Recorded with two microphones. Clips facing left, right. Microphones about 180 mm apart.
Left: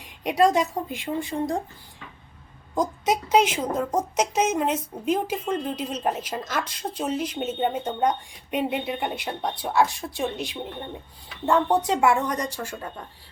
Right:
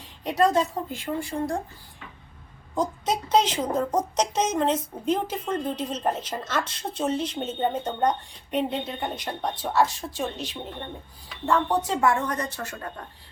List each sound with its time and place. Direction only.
0.0 s a woman's voice: 15° left (ahead or behind)
3.1 s a woman's voice: 10° left (ahead or behind)